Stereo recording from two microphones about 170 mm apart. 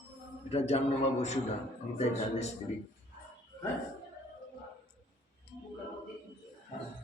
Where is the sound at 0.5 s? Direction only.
40° left (ahead or behind).